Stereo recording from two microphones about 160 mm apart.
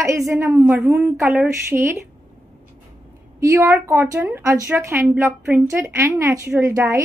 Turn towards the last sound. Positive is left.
turn(degrees=-15)  # may be behind; listen again after turning